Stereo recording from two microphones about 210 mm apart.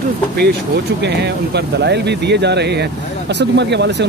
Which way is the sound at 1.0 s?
55° right (ahead or behind).